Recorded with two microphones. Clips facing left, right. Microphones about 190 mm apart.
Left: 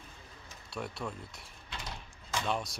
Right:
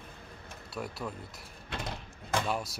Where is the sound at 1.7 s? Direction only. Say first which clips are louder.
Right 6 dB; 55° right (ahead or behind).